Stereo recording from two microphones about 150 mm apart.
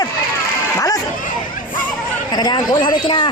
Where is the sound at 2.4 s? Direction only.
25° left (ahead or behind).